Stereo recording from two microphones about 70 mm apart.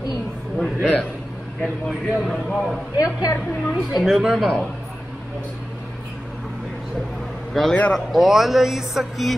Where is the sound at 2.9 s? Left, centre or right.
Left.